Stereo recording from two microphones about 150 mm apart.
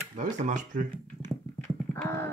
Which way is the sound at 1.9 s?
15° left (ahead or behind).